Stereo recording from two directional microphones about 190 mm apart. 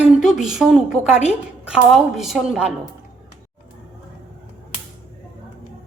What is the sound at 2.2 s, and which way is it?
Speech, centre (ahead or behind).